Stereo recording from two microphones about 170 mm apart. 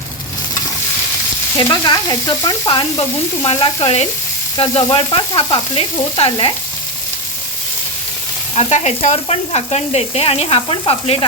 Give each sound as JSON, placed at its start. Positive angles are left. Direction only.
{"t": 1.5, "sound": "frying", "side_deg": 25}
{"t": 3.4, "sound": "sizzle", "side_deg": 30}
{"t": 8.5, "sound": "sizzle", "side_deg": 40}